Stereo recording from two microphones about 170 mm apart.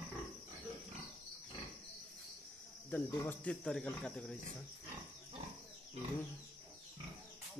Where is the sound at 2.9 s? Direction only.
10° left (ahead or behind).